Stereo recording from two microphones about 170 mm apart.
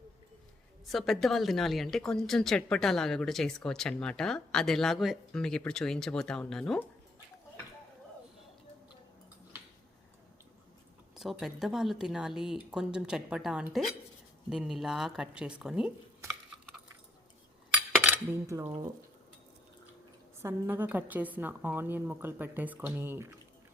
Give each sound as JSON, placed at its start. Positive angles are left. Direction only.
{"t": 0.9, "sound": "a woman's voice", "side_deg": 0}
{"t": 11.1, "sound": "a woman's voice", "side_deg": 0}
{"t": 18.0, "sound": "cutlery", "side_deg": -15}
{"t": 20.4, "sound": "a woman's voice", "side_deg": -10}